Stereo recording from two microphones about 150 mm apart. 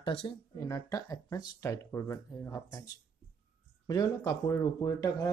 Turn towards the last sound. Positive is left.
turn(degrees=25)  # may be behind; listen again after turning